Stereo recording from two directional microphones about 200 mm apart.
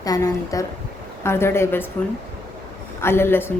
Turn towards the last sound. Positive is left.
turn(degrees=10)  # may be behind; listen again after turning